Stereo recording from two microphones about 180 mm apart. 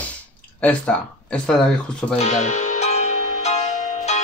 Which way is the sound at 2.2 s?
40° left (ahead or behind).